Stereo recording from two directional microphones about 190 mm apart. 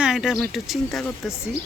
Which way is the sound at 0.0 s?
Centre (ahead or behind).